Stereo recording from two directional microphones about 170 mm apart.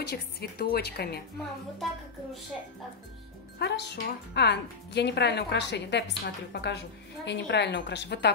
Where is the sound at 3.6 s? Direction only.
85° left.